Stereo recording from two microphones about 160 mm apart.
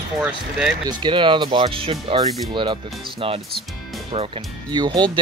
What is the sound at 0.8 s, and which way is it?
Speech, 30° right (ahead or behind).